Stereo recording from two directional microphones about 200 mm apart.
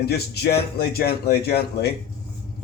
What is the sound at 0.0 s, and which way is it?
Speech, 55° left (ahead or behind).